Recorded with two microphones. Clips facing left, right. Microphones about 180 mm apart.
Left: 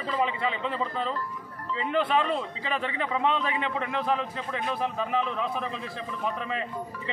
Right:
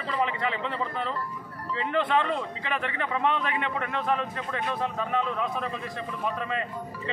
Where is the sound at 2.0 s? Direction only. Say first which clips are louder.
Even; 10° left (ahead or behind).